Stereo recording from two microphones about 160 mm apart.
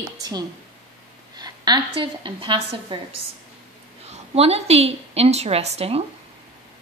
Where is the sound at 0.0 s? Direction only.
25° right (ahead or behind); by 6.0 s 40° right (ahead or behind).